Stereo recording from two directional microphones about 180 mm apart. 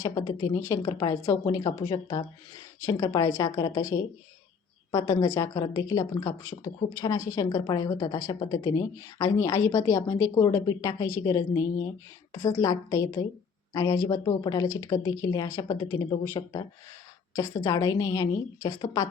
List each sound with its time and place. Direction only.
0.0 s a woman's voice: 20° left (ahead or behind)